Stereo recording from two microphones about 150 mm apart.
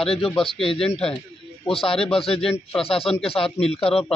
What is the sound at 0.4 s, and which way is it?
Speech, 35° left (ahead or behind).